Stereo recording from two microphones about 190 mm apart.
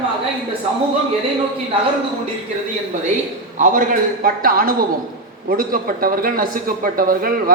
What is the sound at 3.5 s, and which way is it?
A man's voice, 40° right (ahead or behind).